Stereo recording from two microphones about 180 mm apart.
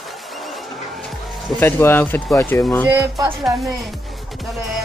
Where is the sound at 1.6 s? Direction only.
10° left (ahead or behind).